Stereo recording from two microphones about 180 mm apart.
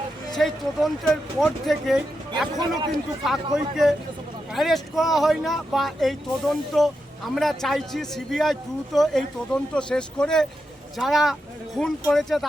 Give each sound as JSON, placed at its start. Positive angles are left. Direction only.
{"t": 0.3, "sound": "speech", "side_deg": 0}
{"t": 2.6, "sound": "a man's voice", "side_deg": -25}
{"t": 3.2, "sound": "speech", "side_deg": 0}